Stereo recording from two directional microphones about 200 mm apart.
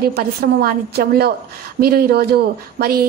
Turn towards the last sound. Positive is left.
turn(degrees=-50)  # may be behind; listen again after turning